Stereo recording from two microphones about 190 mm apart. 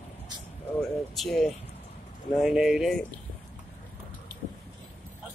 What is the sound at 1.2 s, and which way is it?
Speech, centre (ahead or behind).